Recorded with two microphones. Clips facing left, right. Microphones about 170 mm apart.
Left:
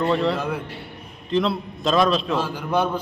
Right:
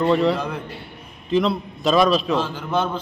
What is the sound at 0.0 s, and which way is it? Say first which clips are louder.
A man's voice: right 3 dB; centre (ahead or behind).